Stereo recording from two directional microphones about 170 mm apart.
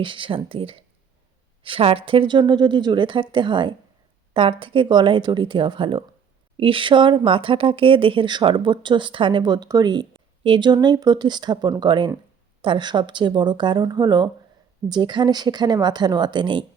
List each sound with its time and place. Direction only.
0.0 s speech: 30° right (ahead or behind)